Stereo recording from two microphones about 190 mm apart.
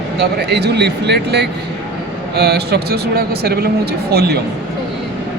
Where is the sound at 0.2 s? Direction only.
60° right (ahead or behind).